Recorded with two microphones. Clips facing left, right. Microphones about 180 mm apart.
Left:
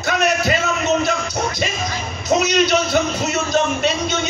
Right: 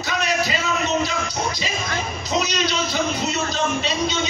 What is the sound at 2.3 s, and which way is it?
A man's voice, 55° left (ahead or behind).